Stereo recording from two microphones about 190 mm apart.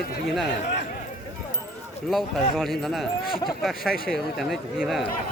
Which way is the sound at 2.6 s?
Centre (ahead or behind).